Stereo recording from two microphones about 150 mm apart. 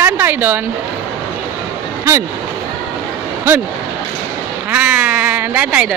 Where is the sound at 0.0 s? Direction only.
15° right (ahead or behind).